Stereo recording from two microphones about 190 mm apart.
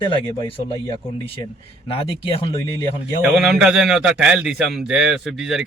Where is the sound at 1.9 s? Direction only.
30° left (ahead or behind).